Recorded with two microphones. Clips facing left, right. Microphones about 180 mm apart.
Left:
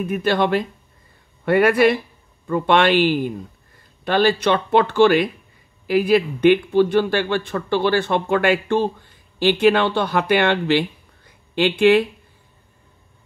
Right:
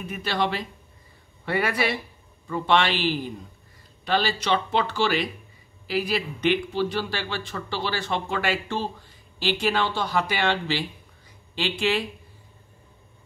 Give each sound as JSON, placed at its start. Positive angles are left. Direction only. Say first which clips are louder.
{"t": 0.0, "sound": "speech", "louder": "left 8 dB", "side_deg": 50}